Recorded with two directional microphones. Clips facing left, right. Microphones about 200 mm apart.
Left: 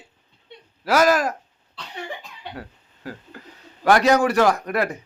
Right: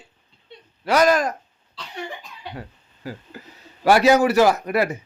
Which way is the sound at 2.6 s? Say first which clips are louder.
Even; centre (ahead or behind).